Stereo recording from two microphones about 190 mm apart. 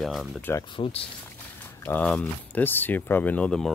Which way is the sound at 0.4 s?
15° left (ahead or behind).